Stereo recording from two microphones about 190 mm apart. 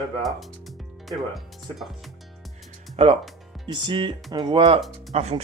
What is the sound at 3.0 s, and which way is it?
Speech, 30° right (ahead or behind).